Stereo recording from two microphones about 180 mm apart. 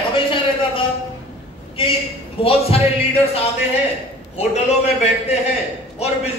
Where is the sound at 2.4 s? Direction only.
30° left (ahead or behind).